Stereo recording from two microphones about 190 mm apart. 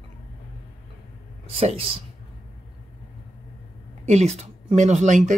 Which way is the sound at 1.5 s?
30° right (ahead or behind).